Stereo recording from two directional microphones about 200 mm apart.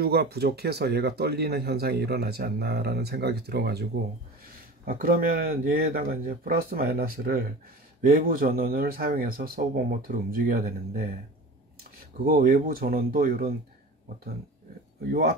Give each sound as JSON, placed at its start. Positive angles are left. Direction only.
{"t": 0.0, "sound": "speech", "side_deg": -55}
{"t": 4.8, "sound": "speech", "side_deg": -45}
{"t": 12.3, "sound": "speech", "side_deg": -45}